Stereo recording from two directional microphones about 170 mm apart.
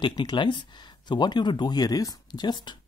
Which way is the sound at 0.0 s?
25° left (ahead or behind).